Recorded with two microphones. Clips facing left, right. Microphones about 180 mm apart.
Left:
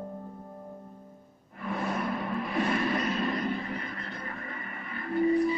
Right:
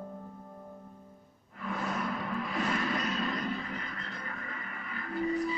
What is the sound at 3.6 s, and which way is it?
Music, 25° left (ahead or behind).